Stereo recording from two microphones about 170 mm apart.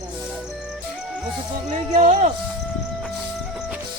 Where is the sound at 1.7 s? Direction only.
45° right (ahead or behind).